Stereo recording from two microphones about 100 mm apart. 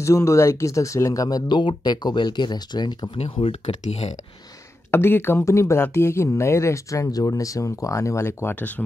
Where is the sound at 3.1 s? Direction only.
70° left (ahead or behind); by 4.1 s 85° left.